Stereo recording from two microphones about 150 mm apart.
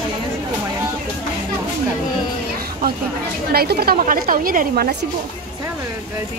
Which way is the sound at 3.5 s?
90° right.